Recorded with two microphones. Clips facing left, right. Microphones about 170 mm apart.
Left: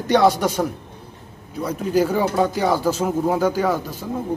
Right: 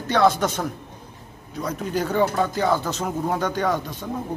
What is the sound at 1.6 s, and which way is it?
Speech, 10° left (ahead or behind).